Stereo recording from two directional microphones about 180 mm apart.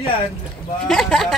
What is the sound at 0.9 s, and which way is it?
Speech, centre (ahead or behind).